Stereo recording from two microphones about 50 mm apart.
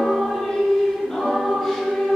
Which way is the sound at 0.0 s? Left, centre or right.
Centre.